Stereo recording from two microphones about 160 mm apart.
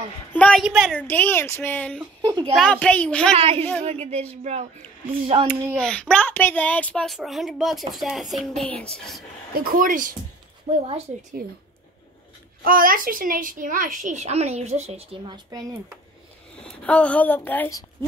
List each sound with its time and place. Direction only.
0.3 s a woman's voice: 5° left (ahead or behind)
0.9 s speech: 10° left (ahead or behind)
2.2 s a woman's voice: 30° right (ahead or behind)
2.5 s speech: 5° left (ahead or behind)
3.3 s speech: 40° right (ahead or behind)
5.8 s a woman's voice: 5° left (ahead or behind)
9.5 s a child's voice: 65° right (ahead or behind)
10.7 s speech: 40° right (ahead or behind)
11.4 s speech: 70° right (ahead or behind)
12.6 s a child's voice: 60° right (ahead or behind); by 15.3 s 40° right (ahead or behind)
16.5 s a woman's voice: 5° left (ahead or behind)